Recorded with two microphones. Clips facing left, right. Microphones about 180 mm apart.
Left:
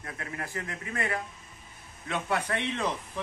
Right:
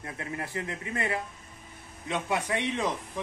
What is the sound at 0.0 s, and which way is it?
A man's voice, 25° right (ahead or behind).